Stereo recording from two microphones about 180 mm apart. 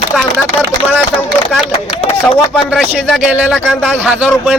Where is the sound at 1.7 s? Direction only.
30° left (ahead or behind).